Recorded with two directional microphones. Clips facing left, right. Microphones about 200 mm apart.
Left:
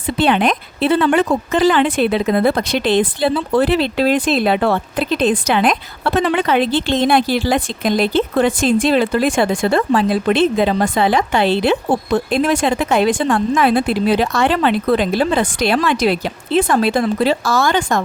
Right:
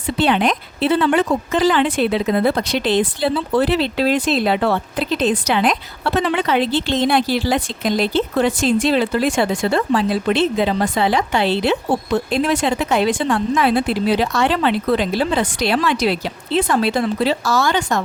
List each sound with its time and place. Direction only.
0.2 s speech: 55° left (ahead or behind)